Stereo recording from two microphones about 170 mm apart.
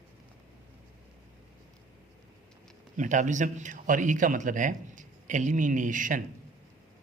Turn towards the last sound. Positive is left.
turn(degrees=-50)  # may be behind; listen again after turning